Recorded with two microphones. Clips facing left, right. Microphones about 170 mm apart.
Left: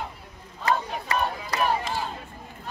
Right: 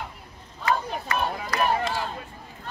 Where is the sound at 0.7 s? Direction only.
30° left (ahead or behind).